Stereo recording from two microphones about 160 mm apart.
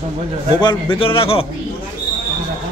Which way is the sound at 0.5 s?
30° left (ahead or behind).